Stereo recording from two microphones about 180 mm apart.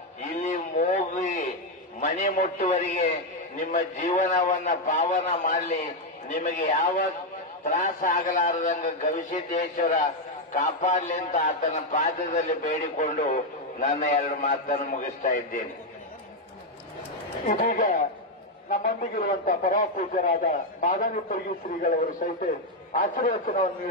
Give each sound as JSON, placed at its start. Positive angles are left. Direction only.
{"t": 0.4, "sound": "a sound", "side_deg": 45}
{"t": 2.0, "sound": "a man's voice", "side_deg": 45}
{"t": 17.5, "sound": "a man's voice", "side_deg": 45}